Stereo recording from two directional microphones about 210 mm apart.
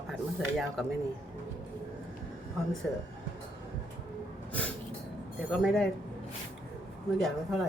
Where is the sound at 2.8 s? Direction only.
5° left (ahead or behind).